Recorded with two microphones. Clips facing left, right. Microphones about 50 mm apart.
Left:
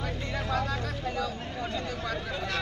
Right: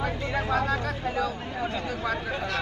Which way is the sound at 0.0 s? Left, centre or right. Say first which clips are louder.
Right 5 dB; right.